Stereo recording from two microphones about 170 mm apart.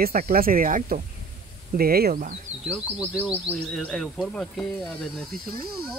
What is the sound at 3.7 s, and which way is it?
Speech, centre (ahead or behind).